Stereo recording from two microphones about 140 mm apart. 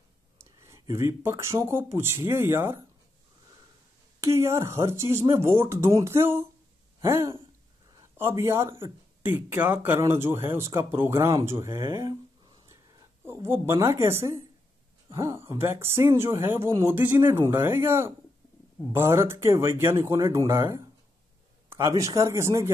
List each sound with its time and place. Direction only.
0.4 s speech: 20° right (ahead or behind)
4.2 s a woman's voice: 20° right (ahead or behind)
13.2 s a woman's voice: 15° right (ahead or behind)